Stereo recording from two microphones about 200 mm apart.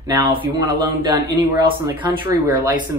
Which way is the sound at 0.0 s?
25° right (ahead or behind).